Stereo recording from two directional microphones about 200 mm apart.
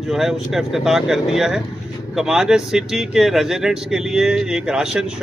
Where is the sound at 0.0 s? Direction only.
Centre (ahead or behind).